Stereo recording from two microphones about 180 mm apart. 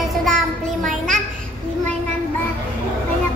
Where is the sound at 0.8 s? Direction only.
Centre (ahead or behind).